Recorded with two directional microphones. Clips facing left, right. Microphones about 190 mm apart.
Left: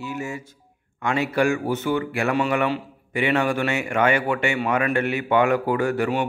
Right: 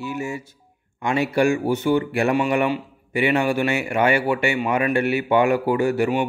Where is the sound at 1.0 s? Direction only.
15° right (ahead or behind).